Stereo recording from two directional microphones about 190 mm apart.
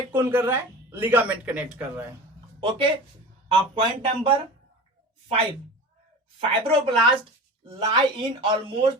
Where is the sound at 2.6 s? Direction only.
25° right (ahead or behind).